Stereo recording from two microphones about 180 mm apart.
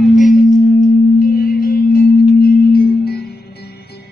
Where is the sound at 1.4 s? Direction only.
55° left (ahead or behind).